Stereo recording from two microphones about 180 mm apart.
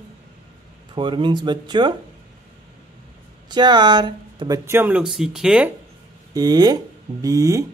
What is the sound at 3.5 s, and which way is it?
Speech, 25° right (ahead or behind).